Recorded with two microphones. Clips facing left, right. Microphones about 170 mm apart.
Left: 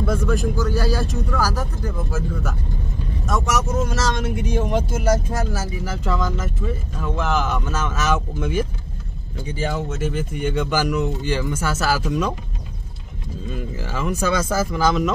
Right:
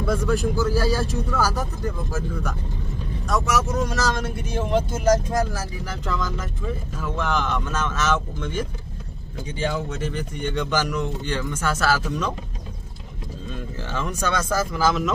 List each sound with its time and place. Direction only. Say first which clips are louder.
0.0 s speech: left 1 dB; centre (ahead or behind)
3.3 s speech: left 1 dB; centre (ahead or behind)
4.4 s speech: even; 15° left (ahead or behind)
13.5 s speech: left 3 dB; 10° left (ahead or behind)